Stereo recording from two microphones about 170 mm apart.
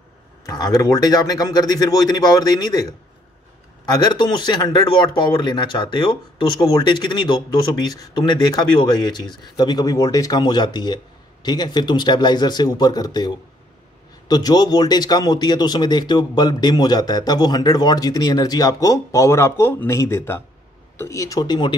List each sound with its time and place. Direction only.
0.5 s a man's voice: 20° left (ahead or behind)